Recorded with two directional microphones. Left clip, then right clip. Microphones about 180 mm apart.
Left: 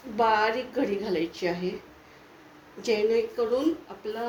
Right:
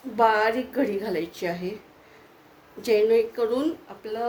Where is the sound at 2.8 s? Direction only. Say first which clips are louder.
Right 4 dB; 55° right (ahead or behind).